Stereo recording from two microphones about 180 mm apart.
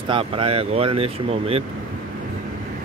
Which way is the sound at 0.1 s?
30° right (ahead or behind).